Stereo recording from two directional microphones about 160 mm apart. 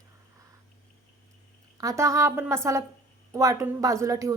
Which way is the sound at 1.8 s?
20° right (ahead or behind).